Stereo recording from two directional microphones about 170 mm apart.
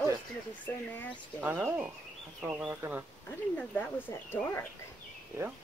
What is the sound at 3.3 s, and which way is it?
Speech, 10° left (ahead or behind).